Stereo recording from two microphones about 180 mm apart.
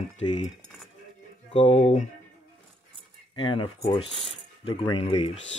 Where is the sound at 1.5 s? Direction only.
35° left (ahead or behind).